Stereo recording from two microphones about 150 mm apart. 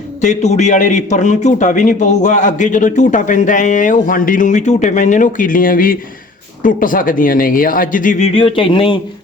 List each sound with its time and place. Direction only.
0.2 s a man's voice: 50° left (ahead or behind)
8.3 s speech: 35° left (ahead or behind)